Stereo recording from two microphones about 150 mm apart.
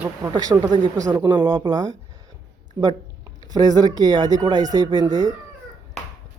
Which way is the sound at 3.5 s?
25° right (ahead or behind).